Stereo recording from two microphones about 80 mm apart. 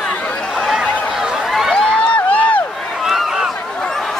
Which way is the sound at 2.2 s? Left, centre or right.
Centre.